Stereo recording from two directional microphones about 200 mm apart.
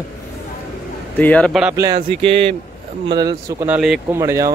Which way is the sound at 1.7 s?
20° right (ahead or behind).